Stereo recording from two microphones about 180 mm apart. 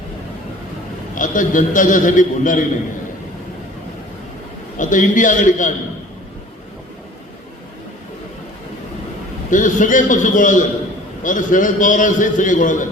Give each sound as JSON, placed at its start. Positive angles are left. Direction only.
{"t": 1.1, "sound": "a man's voice", "side_deg": 45}
{"t": 4.8, "sound": "a man's voice", "side_deg": 45}
{"t": 9.5, "sound": "a man's voice", "side_deg": 45}